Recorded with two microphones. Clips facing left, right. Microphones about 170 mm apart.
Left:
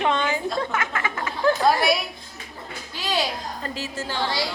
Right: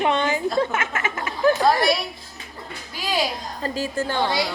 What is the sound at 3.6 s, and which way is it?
Speech, 45° right (ahead or behind).